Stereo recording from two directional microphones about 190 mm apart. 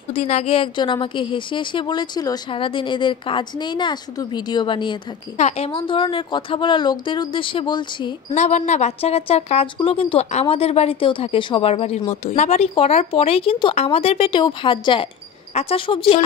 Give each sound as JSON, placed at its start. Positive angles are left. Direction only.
{"t": 0.1, "sound": "a woman's voice", "side_deg": 35}
{"t": 8.4, "sound": "a woman's voice", "side_deg": 40}